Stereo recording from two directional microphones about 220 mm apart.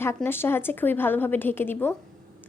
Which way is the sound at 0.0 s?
10° left (ahead or behind).